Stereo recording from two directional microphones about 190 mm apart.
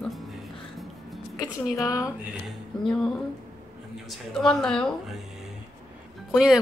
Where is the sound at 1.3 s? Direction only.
20° left (ahead or behind).